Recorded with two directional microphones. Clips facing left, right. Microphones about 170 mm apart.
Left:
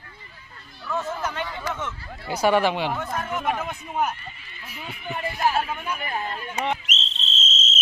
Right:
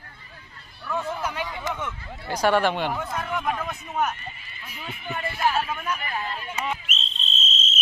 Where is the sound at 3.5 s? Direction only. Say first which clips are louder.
Left 1 dB; 25° left (ahead or behind).